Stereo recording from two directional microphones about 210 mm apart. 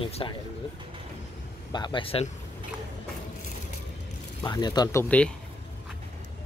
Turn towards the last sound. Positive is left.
turn(degrees=5)  # may be behind; listen again after turning